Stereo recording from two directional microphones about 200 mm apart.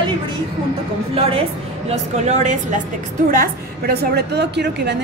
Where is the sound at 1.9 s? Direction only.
35° right (ahead or behind).